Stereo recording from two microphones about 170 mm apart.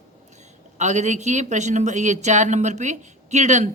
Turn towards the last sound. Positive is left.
turn(degrees=-40)  # may be behind; listen again after turning